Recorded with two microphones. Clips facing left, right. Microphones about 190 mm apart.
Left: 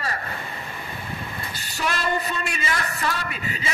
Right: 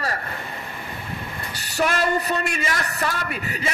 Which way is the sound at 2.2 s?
50° right (ahead or behind).